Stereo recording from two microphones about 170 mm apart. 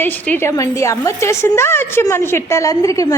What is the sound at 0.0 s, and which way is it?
A woman's voice, 10° left (ahead or behind).